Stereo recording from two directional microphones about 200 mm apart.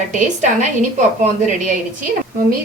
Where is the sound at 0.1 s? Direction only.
40° right (ahead or behind).